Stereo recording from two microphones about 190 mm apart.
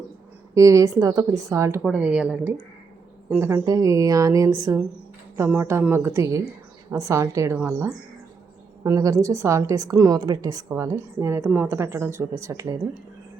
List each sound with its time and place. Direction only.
0.5 s a woman's voice: 15° right (ahead or behind)